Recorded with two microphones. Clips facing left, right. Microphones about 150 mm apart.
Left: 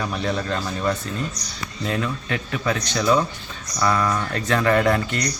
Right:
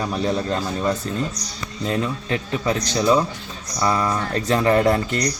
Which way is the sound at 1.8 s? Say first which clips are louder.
Right 2 dB; 30° right (ahead or behind).